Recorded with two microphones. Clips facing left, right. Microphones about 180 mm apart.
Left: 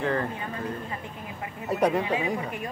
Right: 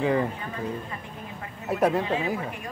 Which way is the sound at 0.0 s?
15° right (ahead or behind).